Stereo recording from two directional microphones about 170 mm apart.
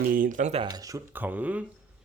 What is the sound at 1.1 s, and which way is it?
Speech, 10° right (ahead or behind).